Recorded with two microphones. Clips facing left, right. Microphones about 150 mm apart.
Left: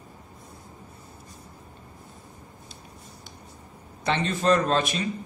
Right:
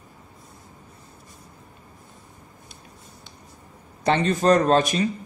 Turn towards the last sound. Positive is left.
turn(degrees=-40)  # may be behind; listen again after turning